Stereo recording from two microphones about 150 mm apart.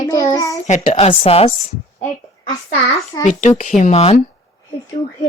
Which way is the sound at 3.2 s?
55° left (ahead or behind).